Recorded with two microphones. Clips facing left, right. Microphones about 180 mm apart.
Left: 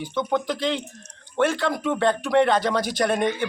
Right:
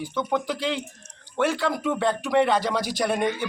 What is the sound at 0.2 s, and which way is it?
Speech, 5° right (ahead or behind).